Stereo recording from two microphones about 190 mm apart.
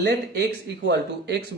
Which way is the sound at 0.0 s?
60° right (ahead or behind).